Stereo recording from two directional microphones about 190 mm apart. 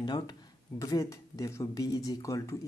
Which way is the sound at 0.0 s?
20° left (ahead or behind).